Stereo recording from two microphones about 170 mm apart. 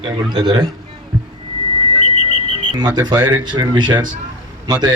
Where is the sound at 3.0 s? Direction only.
25° right (ahead or behind).